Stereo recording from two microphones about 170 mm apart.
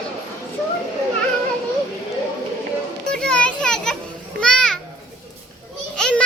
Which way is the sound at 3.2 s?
5° left (ahead or behind).